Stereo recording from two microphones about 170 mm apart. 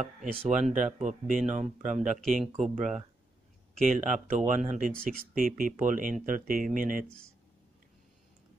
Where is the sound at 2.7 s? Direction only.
45° right (ahead or behind).